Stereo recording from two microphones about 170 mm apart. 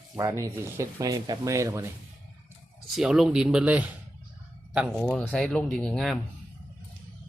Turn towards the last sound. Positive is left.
turn(degrees=5)  # may be behind; listen again after turning